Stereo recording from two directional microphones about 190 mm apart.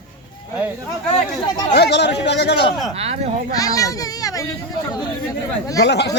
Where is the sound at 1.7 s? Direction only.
60° left (ahead or behind).